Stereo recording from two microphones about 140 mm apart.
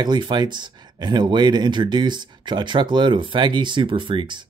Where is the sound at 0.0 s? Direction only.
30° right (ahead or behind).